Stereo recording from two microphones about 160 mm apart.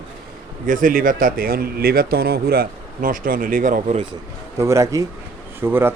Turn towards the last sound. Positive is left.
turn(degrees=-15)  # may be behind; listen again after turning